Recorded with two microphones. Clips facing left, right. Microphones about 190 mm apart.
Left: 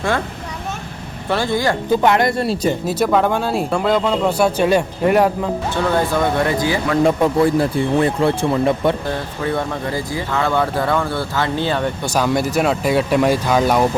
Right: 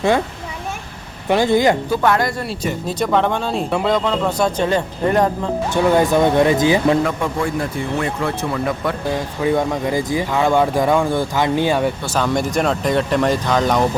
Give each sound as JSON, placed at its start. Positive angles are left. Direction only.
{"t": 1.3, "sound": "speech", "side_deg": -15}
{"t": 1.9, "sound": "speech", "side_deg": 20}
{"t": 2.8, "sound": "speech", "side_deg": 5}
{"t": 5.7, "sound": "speech", "side_deg": -15}
{"t": 7.0, "sound": "speech", "side_deg": 35}
{"t": 9.0, "sound": "speech", "side_deg": -15}
{"t": 12.0, "sound": "speech", "side_deg": 10}